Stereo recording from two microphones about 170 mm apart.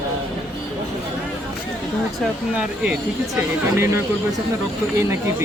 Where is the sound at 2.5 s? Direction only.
5° right (ahead or behind).